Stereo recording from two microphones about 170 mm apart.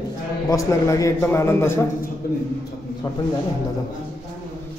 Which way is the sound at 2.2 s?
60° left (ahead or behind).